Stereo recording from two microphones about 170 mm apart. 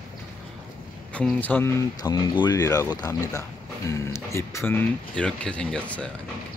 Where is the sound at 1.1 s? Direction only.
10° left (ahead or behind).